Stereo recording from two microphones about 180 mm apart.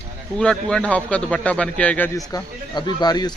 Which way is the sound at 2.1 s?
20° left (ahead or behind).